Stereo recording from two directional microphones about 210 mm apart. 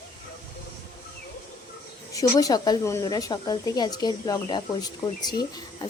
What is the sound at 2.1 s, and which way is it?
Speech, 15° left (ahead or behind).